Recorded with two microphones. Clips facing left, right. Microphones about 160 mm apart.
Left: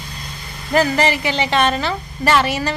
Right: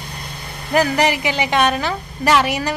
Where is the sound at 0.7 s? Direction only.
15° right (ahead or behind).